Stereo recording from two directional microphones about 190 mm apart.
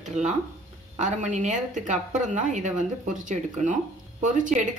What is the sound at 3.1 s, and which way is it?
Speech, 40° right (ahead or behind).